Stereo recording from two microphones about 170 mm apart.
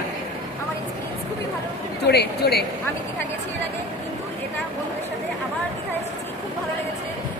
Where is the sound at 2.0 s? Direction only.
70° left (ahead or behind).